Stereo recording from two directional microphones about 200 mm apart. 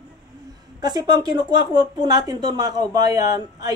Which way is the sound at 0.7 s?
20° right (ahead or behind).